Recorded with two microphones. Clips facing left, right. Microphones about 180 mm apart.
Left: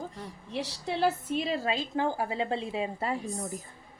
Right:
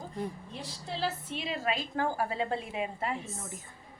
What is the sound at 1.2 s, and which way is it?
Speech, 40° left (ahead or behind).